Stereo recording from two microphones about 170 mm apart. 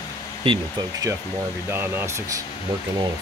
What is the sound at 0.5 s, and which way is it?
Speech, 30° right (ahead or behind).